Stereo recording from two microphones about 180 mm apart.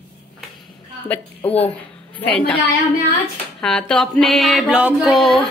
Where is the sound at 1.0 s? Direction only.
10° left (ahead or behind).